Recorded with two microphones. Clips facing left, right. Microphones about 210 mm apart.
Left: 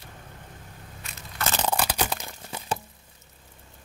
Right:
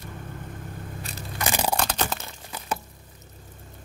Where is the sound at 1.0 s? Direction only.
35° right (ahead or behind).